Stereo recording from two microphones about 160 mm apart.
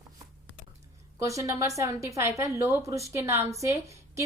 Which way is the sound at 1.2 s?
20° right (ahead or behind).